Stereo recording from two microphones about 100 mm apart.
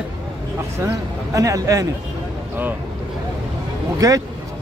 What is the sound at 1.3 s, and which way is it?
Speech, 35° right (ahead or behind).